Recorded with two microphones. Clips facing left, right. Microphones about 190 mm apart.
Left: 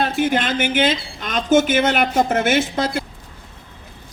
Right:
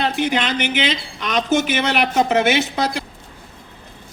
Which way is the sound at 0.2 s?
50° left (ahead or behind).